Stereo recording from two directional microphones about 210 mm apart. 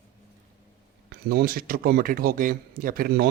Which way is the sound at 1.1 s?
45° right (ahead or behind).